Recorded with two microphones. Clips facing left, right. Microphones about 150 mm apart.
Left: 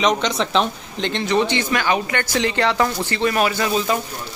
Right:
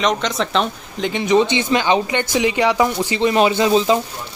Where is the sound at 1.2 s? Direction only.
20° right (ahead or behind).